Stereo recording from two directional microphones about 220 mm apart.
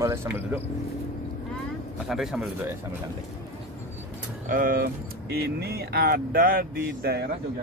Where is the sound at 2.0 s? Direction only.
Centre (ahead or behind).